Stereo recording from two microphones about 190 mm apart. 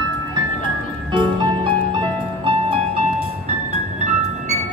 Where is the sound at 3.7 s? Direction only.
35° right (ahead or behind).